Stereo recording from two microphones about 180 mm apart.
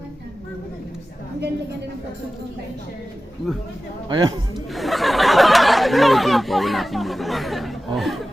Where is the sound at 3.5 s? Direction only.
Centre (ahead or behind).